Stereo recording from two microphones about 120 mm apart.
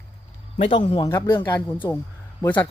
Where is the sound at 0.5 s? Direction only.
50° left (ahead or behind).